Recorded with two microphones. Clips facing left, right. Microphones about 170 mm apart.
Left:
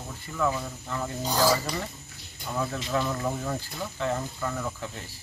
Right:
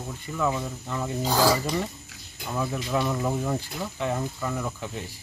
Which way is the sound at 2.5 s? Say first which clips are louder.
Right 2 dB; 10° right (ahead or behind).